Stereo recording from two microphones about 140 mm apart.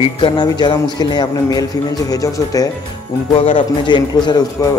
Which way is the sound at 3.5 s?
35° left (ahead or behind).